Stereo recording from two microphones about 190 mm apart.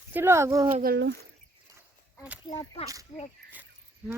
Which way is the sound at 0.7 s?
45° right (ahead or behind).